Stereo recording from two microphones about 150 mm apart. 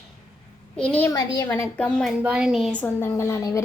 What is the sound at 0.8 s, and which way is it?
Speech, 10° left (ahead or behind).